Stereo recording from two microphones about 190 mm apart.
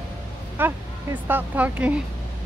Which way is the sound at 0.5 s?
10° right (ahead or behind).